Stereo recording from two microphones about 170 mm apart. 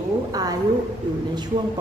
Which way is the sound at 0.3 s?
20° right (ahead or behind).